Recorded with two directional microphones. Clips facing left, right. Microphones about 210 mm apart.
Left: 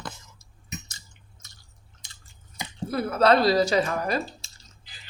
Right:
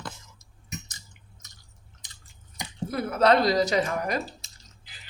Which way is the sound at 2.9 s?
20° right (ahead or behind).